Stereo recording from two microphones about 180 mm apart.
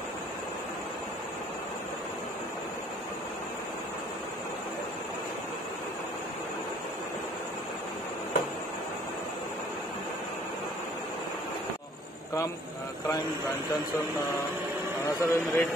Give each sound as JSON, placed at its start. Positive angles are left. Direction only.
{"t": 15.1, "sound": "speech", "side_deg": 15}